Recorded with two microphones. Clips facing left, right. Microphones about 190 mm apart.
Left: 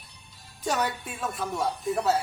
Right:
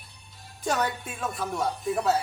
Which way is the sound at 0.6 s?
Centre (ahead or behind).